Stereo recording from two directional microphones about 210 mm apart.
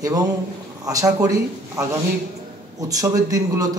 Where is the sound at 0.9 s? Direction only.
15° right (ahead or behind).